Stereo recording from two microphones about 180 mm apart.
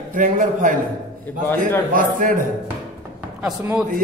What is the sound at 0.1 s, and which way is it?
Speech, 45° right (ahead or behind).